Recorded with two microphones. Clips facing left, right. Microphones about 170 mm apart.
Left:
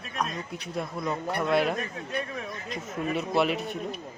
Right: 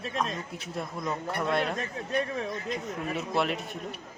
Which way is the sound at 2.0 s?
30° right (ahead or behind).